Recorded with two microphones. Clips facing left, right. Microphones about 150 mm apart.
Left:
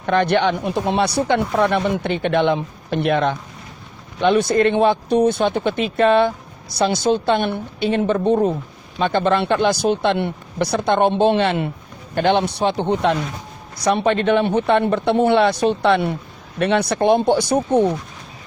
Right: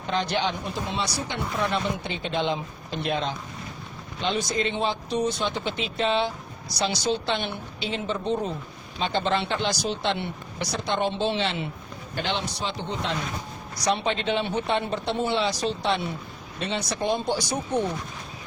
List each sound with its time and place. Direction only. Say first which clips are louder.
0.0 s speech: left 9 dB; 60° left (ahead or behind)